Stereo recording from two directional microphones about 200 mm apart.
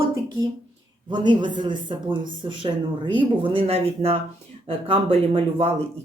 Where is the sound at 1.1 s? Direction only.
20° right (ahead or behind).